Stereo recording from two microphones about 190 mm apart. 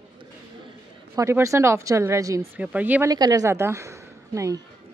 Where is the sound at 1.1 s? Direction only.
15° right (ahead or behind).